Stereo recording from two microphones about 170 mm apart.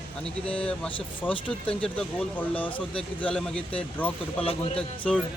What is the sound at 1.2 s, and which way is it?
Speech, 5° left (ahead or behind).